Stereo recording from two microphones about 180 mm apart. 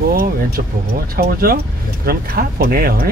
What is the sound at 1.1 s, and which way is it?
Speech, 55° right (ahead or behind).